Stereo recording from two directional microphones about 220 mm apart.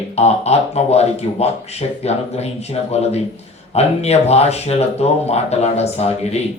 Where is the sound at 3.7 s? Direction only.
30° left (ahead or behind).